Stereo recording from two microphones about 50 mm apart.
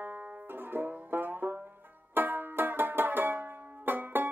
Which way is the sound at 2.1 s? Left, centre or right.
Right.